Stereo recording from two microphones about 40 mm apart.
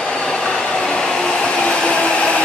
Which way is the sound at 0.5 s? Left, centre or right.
Centre.